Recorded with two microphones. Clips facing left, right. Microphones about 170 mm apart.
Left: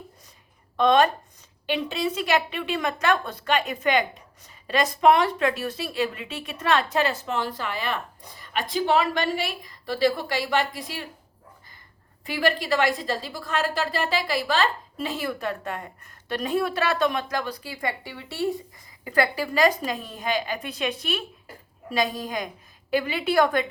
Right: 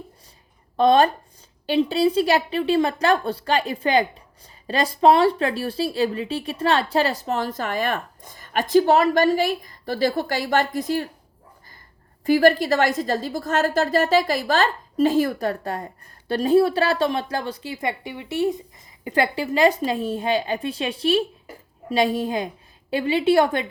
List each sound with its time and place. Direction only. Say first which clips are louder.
0.8 s a woman's voice: right 3 dB; 35° right (ahead or behind)
12.2 s a woman's voice: right 9 dB; 40° right (ahead or behind); by 23.6 s 25° right (ahead or behind)